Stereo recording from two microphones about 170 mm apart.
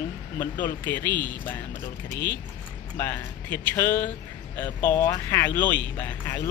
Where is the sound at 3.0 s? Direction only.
10° left (ahead or behind).